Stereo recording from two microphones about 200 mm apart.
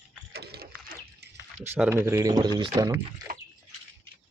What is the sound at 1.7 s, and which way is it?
Speech, 10° right (ahead or behind).